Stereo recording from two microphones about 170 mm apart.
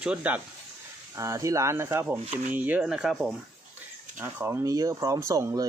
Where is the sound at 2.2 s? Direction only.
35° right (ahead or behind).